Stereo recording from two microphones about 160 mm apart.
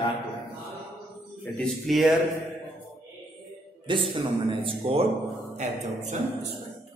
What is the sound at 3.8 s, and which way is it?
A man's voice, 30° right (ahead or behind).